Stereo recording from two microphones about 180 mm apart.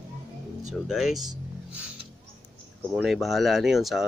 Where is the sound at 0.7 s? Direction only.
Centre (ahead or behind).